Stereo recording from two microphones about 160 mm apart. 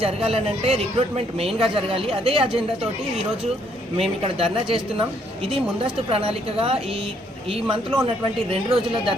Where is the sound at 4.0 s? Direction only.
35° right (ahead or behind).